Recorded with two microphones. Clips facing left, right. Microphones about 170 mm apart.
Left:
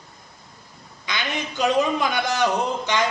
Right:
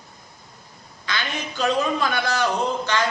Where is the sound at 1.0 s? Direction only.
15° left (ahead or behind).